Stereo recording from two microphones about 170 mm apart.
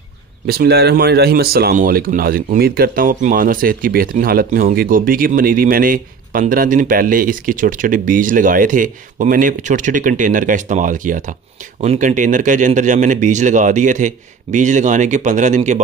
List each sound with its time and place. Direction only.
0.5 s speech: 70° right (ahead or behind); by 15.8 s 45° right (ahead or behind)